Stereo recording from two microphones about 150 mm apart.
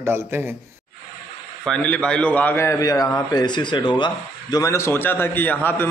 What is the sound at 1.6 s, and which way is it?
A man's voice, 5° left (ahead or behind).